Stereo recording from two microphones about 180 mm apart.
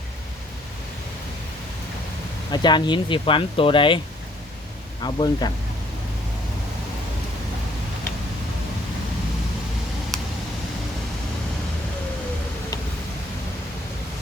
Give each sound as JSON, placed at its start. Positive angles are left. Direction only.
{"t": 2.5, "sound": "speech", "side_deg": 25}
{"t": 5.0, "sound": "speech", "side_deg": 25}